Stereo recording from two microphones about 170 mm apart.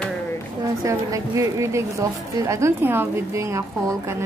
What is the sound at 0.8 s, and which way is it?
Speech, 20° right (ahead or behind).